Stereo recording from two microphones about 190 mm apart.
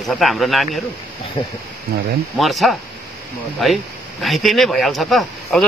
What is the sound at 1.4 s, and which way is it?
Speech, 25° left (ahead or behind).